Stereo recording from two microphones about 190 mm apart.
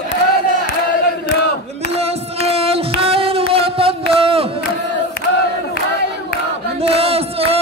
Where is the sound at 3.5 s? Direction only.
30° right (ahead or behind).